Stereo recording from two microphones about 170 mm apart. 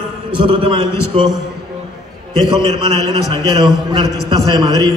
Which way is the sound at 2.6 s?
25° right (ahead or behind).